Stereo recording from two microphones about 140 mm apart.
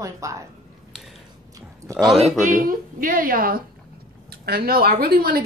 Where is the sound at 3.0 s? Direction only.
80° right.